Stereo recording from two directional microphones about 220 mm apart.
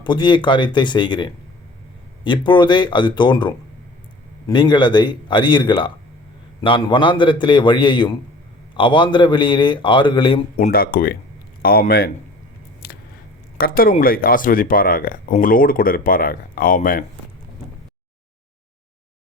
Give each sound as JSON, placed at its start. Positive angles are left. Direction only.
{"t": 0.0, "sound": "a man's voice", "side_deg": 20}
{"t": 10.7, "sound": "speech", "side_deg": 40}
{"t": 13.6, "sound": "speech", "side_deg": 40}